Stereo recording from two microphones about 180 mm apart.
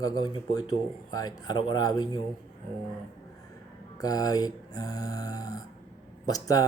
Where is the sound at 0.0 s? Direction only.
20° left (ahead or behind).